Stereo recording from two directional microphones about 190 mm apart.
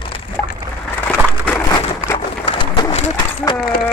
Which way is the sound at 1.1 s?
10° left (ahead or behind).